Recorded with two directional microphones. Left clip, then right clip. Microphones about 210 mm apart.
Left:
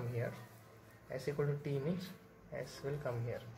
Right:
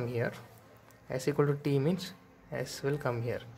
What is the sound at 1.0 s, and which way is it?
A man's voice, 30° right (ahead or behind).